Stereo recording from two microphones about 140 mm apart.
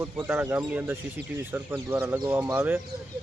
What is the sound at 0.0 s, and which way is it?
Speech, 15° right (ahead or behind).